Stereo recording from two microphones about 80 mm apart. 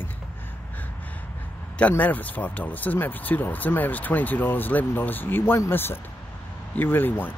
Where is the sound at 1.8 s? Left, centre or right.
Centre.